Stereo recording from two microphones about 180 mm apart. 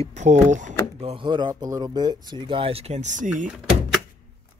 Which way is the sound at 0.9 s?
30° right (ahead or behind).